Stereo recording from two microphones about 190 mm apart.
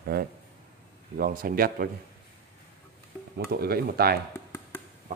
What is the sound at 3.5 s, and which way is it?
Speech, 55° right (ahead or behind).